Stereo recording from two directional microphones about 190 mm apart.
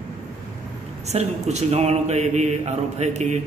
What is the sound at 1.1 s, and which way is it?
A man's voice, 35° right (ahead or behind).